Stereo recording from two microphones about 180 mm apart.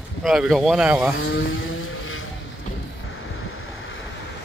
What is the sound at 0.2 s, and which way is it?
Speech, centre (ahead or behind).